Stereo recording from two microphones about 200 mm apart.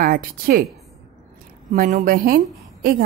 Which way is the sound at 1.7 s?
45° right (ahead or behind).